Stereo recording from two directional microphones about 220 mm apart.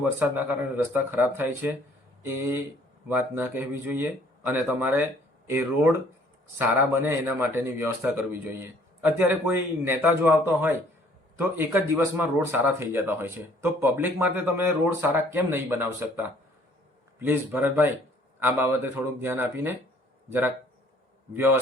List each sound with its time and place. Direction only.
0.0 s speech: 5° right (ahead or behind)
3.1 s speech: 10° right (ahead or behind)
21.3 s speech: 10° right (ahead or behind)